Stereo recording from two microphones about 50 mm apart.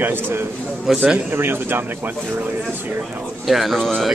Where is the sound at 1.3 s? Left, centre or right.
Right.